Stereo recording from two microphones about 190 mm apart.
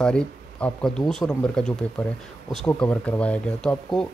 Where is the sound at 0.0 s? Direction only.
5° left (ahead or behind).